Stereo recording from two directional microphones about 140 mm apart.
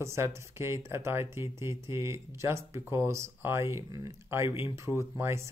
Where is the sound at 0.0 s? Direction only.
20° right (ahead or behind).